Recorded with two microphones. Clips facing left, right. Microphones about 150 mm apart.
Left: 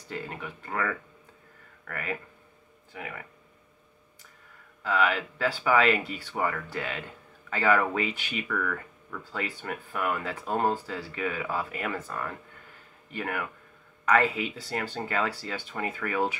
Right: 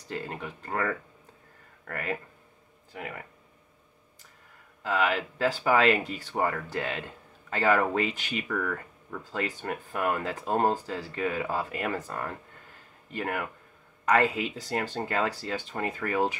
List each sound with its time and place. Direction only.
0.1 s speech: 35° right (ahead or behind)
4.8 s speech: 40° right (ahead or behind)
14.1 s speech: 40° right (ahead or behind)